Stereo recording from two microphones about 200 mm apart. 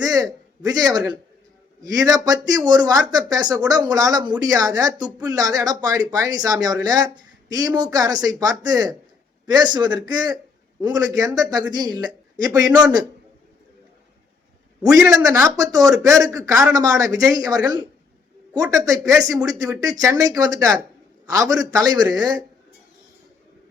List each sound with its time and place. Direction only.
0.0 s a man's voice: 20° right (ahead or behind)
14.8 s speech: 15° right (ahead or behind)